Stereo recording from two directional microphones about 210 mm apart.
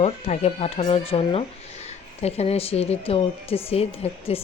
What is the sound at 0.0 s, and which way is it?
Speech, 30° left (ahead or behind).